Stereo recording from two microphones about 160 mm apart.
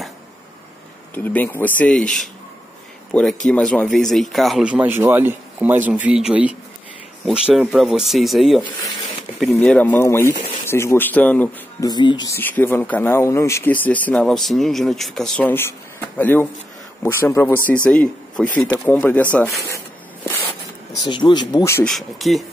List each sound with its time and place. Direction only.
1.1 s speech: 10° left (ahead or behind)
11.8 s speech: 25° left (ahead or behind)
12.4 s speech: 10° left (ahead or behind)
21.0 s speech: 30° left (ahead or behind)
21.8 s speech: centre (ahead or behind)